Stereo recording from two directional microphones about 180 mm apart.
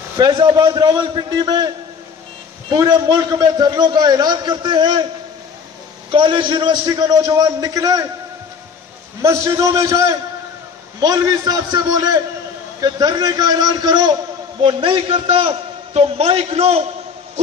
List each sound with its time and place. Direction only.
0.2 s a man's voice: 25° right (ahead or behind)
2.7 s a man's voice: 25° right (ahead or behind)
6.1 s a man's voice: 25° right (ahead or behind)
9.2 s a man's voice: 15° right (ahead or behind); by 16.8 s 35° right (ahead or behind)